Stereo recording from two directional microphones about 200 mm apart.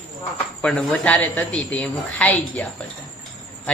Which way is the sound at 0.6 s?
5° left (ahead or behind).